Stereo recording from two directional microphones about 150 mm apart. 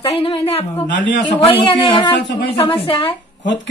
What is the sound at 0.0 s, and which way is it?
A man's voice, 40° left (ahead or behind).